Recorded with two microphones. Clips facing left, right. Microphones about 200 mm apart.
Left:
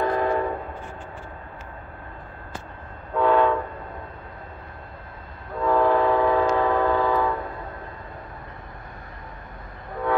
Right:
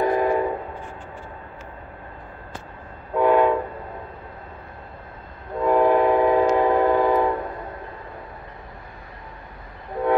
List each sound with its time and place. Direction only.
0.0 s train: 15° right (ahead or behind)
3.2 s train: 15° right (ahead or behind)
5.6 s train: 15° right (ahead or behind)